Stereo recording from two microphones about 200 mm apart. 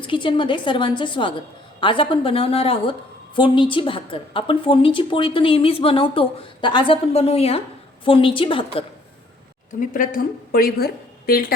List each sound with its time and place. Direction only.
0.0 s a woman's voice: 25° left (ahead or behind)
9.9 s a woman's voice: 45° left (ahead or behind)